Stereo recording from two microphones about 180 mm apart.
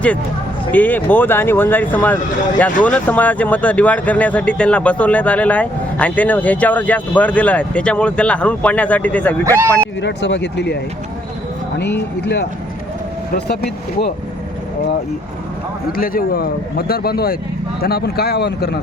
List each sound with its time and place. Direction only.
0.7 s speech: 10° left (ahead or behind)
9.4 s speech: 20° right (ahead or behind)
10.0 s speech: 75° left (ahead or behind)
11.8 s a man's voice: 70° left (ahead or behind)
15.9 s a man's voice: 55° left (ahead or behind)